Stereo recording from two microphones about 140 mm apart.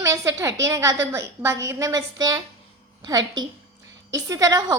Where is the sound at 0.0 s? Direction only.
20° right (ahead or behind).